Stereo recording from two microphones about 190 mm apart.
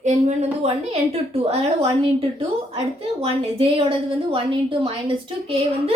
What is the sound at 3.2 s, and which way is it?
A woman's voice, 30° right (ahead or behind).